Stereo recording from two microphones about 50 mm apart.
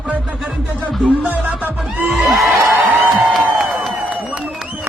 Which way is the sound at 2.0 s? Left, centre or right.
Centre.